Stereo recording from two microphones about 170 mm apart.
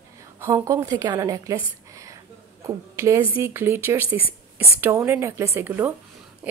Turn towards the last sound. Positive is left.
turn(degrees=-15)  # may be behind; listen again after turning